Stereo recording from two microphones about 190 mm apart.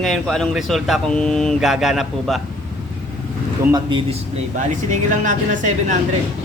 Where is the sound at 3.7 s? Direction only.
25° right (ahead or behind).